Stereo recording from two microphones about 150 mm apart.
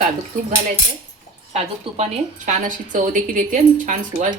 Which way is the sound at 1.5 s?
45° right (ahead or behind).